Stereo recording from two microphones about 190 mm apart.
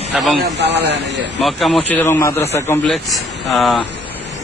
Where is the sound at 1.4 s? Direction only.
Centre (ahead or behind).